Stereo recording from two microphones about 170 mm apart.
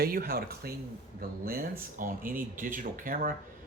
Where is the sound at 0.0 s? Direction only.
60° right (ahead or behind).